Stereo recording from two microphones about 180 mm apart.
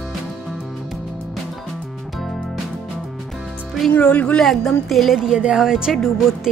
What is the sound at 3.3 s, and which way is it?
A woman's voice, centre (ahead or behind).